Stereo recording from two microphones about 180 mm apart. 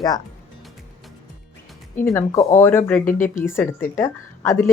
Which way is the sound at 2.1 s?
15° left (ahead or behind).